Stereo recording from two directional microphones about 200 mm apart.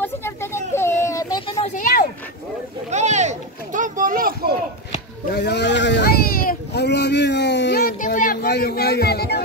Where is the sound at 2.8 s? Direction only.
35° right (ahead or behind).